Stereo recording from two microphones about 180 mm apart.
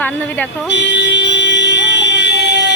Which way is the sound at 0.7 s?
80° left.